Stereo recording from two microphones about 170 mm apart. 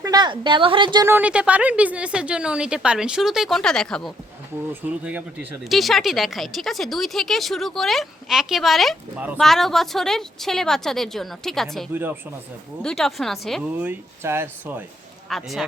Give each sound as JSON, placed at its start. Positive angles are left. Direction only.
{"t": 0.0, "sound": "a woman's voice", "side_deg": -25}
{"t": 1.0, "sound": "a woman's voice", "side_deg": -10}
{"t": 4.7, "sound": "a woman's voice", "side_deg": -10}
{"t": 9.4, "sound": "a woman's voice", "side_deg": 0}
{"t": 13.7, "sound": "speech", "side_deg": -10}
{"t": 15.3, "sound": "a woman's voice", "side_deg": 0}